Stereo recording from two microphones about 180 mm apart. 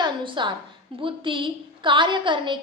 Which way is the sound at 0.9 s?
30° right (ahead or behind).